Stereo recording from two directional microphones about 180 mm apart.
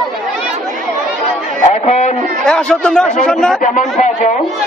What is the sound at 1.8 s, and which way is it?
Speech, 35° left (ahead or behind).